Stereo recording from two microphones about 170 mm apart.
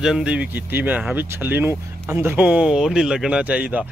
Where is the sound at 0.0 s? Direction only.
5° right (ahead or behind).